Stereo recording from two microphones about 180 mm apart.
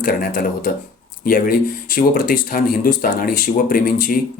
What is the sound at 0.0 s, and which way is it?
Speech, 50° left (ahead or behind).